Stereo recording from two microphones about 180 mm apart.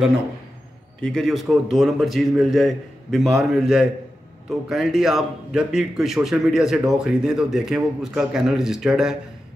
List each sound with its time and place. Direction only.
1.0 s a man's voice: centre (ahead or behind)